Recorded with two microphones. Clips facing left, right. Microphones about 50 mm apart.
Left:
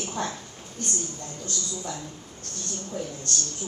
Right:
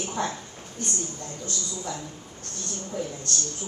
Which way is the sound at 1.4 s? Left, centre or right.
Right.